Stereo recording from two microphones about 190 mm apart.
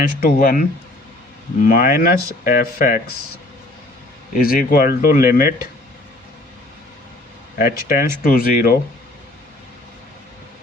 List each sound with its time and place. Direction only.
0.2 s speech: 45° left (ahead or behind)
4.4 s speech: 50° left (ahead or behind)
7.6 s speech: 50° left (ahead or behind)